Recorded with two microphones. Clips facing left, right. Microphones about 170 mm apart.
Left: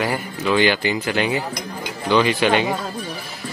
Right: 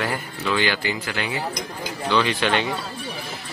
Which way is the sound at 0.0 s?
15° left (ahead or behind).